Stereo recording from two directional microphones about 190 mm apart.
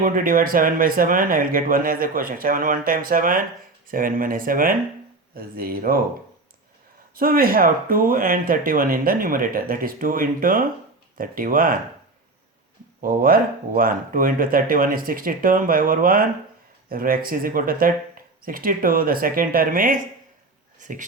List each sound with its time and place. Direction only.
0.0 s speech: 45° right (ahead or behind)
7.2 s speech: 50° right (ahead or behind)
13.0 s speech: 50° right (ahead or behind)